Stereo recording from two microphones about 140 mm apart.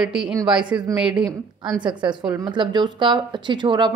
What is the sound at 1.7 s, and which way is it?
Speech, 35° right (ahead or behind).